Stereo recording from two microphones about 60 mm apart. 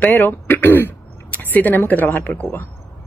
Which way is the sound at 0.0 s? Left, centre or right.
Left.